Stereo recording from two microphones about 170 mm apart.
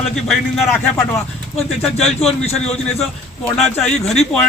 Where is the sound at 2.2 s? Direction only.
40° left (ahead or behind).